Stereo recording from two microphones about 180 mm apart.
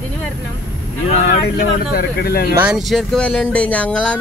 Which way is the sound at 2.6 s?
Centre (ahead or behind).